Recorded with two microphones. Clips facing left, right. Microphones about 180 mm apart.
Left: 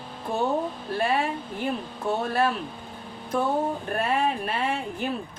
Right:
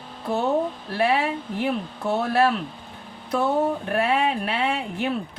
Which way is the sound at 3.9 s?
70° right (ahead or behind).